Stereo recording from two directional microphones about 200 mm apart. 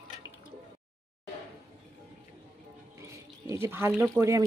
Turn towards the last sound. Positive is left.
turn(degrees=-15)  # may be behind; listen again after turning